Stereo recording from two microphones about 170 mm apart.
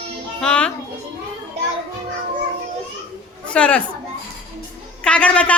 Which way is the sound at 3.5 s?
5° left (ahead or behind).